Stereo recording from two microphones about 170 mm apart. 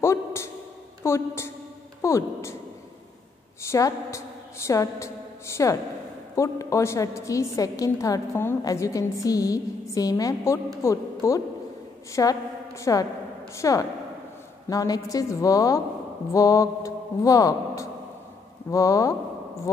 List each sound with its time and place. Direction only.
0.0 s a sound: 15° left (ahead or behind)
1.0 s a woman's voice: 15° left (ahead or behind)
3.6 s a woman's voice: 15° left (ahead or behind)